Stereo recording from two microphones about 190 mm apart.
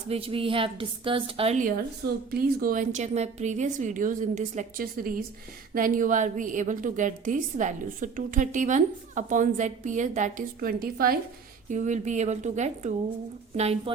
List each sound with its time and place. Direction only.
0.1 s a woman's voice: 30° right (ahead or behind)
2.3 s a woman's voice: 50° right (ahead or behind)
11.7 s a woman's voice: 40° right (ahead or behind)